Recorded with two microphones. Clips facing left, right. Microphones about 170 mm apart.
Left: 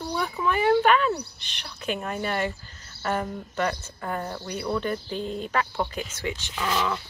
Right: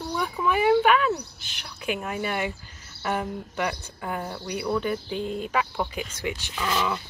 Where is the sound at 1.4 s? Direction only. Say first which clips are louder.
Even; 5° right (ahead or behind).